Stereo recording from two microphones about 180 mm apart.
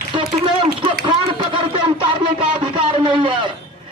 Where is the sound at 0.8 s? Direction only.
25° right (ahead or behind).